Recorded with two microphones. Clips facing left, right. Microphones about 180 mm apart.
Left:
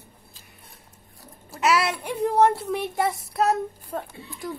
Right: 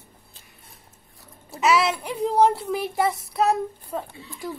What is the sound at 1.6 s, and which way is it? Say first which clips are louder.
Speech: right 2 dB; centre (ahead or behind).